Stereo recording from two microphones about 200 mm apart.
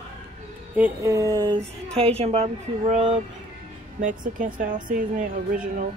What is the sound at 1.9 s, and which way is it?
Speech, 30° right (ahead or behind).